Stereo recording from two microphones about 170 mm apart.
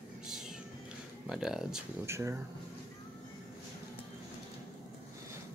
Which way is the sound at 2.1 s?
15° right (ahead or behind).